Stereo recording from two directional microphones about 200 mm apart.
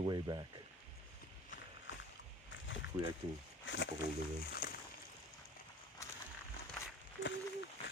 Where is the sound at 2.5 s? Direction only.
70° left (ahead or behind).